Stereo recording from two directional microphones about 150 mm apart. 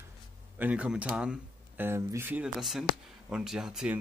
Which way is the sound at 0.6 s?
10° right (ahead or behind).